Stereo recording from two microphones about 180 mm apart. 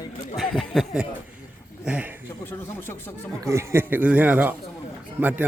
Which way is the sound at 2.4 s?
15° left (ahead or behind).